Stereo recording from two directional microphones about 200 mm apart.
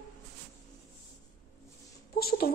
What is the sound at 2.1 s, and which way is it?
Speech, 50° left (ahead or behind).